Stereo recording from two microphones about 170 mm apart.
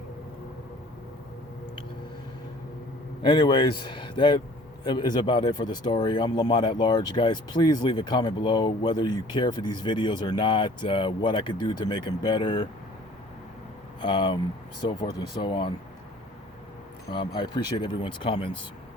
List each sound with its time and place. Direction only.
3.2 s speech: 30° left (ahead or behind)
14.0 s speech: 25° left (ahead or behind)
17.1 s speech: 30° left (ahead or behind)